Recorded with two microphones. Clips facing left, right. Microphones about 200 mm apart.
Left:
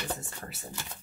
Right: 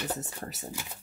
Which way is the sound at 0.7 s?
10° right (ahead or behind).